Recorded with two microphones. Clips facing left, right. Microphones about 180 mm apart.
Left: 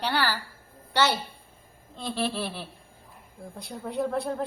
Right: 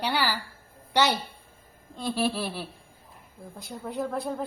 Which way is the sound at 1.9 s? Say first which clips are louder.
Right 2 dB; 10° right (ahead or behind).